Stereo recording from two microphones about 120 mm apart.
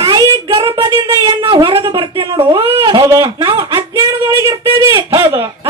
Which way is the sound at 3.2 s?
45° right (ahead or behind).